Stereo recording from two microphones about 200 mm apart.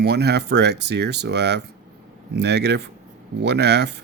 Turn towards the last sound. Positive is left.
turn(degrees=-55)  # may be behind; listen again after turning